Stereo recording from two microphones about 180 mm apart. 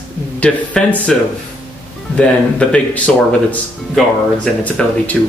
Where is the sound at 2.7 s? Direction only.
5° left (ahead or behind).